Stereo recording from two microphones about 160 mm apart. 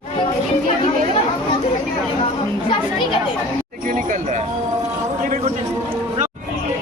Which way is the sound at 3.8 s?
55° right (ahead or behind).